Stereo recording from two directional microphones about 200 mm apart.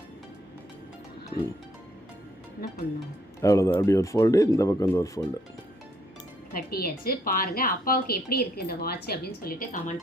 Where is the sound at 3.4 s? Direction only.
15° left (ahead or behind).